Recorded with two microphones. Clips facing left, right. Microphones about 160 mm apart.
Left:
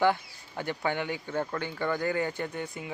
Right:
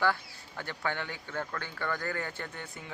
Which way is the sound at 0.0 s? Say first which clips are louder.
Left 5 dB; 20° left (ahead or behind).